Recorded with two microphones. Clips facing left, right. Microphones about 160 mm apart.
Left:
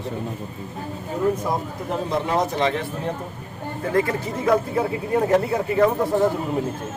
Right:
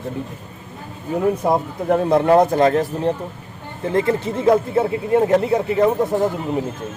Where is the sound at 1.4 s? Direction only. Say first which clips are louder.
Right 7 dB; 60° right (ahead or behind); by 3.1 s 35° right (ahead or behind).